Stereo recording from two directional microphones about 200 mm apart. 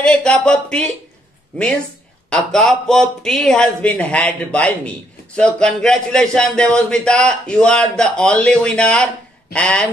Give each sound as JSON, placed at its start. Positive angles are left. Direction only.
{"t": 0.0, "sound": "speech", "side_deg": 5}
{"t": 2.2, "sound": "speech", "side_deg": 5}